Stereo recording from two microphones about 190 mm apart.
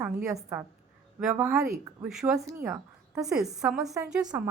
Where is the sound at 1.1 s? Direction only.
5° right (ahead or behind).